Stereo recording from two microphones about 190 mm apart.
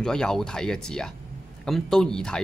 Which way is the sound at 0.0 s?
5° left (ahead or behind).